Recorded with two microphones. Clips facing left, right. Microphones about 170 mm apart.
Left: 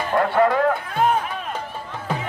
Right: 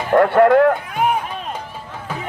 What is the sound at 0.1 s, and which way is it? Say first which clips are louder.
Music: right 7 dB; 60° right (ahead or behind).